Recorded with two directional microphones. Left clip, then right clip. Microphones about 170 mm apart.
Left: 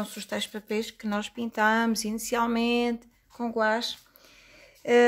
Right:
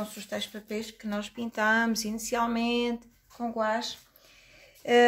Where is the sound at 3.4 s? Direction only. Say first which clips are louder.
Left 3 dB; 60° left (ahead or behind).